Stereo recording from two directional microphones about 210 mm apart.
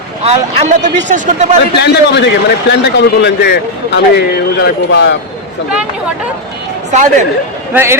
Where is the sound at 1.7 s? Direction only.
55° left (ahead or behind).